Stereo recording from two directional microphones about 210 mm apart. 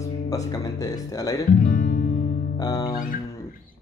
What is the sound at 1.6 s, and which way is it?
Guitar, 40° left (ahead or behind).